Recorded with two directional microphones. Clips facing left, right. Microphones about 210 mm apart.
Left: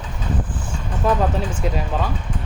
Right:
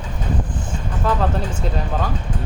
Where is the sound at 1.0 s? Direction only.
20° left (ahead or behind).